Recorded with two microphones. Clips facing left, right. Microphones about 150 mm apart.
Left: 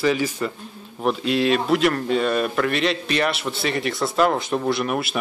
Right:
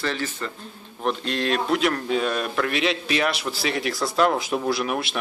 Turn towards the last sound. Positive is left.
turn(degrees=0)  # may be behind; listen again after turning